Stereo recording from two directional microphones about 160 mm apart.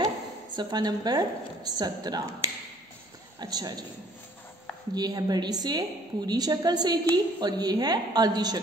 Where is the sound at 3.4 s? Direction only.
25° right (ahead or behind).